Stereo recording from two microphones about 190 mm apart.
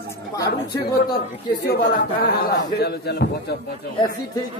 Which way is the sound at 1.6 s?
55° left (ahead or behind).